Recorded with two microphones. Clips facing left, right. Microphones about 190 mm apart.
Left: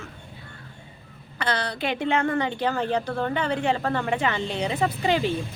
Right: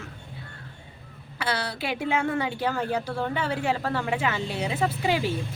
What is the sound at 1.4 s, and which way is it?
A woman's voice, 5° right (ahead or behind).